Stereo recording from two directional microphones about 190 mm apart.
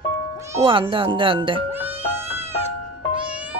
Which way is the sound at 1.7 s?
10° right (ahead or behind).